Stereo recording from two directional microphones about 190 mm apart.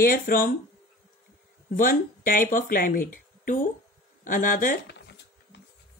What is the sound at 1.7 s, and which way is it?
A woman's voice, 50° left (ahead or behind).